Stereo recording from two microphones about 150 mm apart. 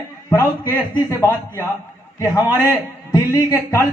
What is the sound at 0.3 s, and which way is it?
A man's voice, 20° left (ahead or behind).